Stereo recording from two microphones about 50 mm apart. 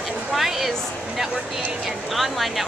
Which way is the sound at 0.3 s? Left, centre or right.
Centre.